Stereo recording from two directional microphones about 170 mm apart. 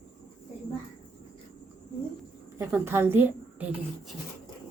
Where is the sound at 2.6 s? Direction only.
15° right (ahead or behind).